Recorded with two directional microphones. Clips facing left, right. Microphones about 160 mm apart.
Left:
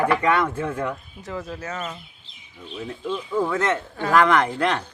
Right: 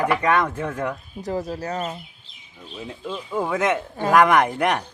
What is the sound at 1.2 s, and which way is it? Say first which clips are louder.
Speech: right 5 dB; 35° right (ahead or behind).